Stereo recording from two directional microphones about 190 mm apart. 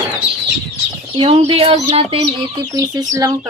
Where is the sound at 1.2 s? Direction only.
30° right (ahead or behind).